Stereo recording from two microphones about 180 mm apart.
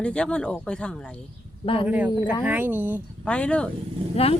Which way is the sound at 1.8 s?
10° right (ahead or behind).